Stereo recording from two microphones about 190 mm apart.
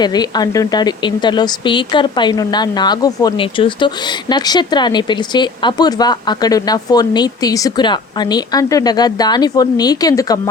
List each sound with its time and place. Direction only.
0.0 s speech: 20° left (ahead or behind)